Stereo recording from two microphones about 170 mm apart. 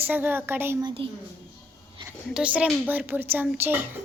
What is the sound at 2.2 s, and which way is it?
A woman's voice, 5° right (ahead or behind).